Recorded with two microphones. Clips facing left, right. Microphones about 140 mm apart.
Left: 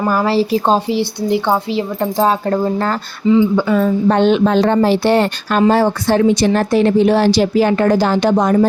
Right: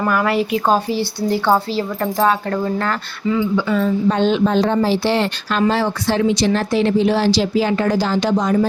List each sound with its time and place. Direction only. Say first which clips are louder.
0.1 s speech: left 4 dB; 30° left (ahead or behind)
0.9 s speech: left 3 dB; 20° left (ahead or behind)
3.5 s a woman's voice: left 3 dB; 50° left (ahead or behind)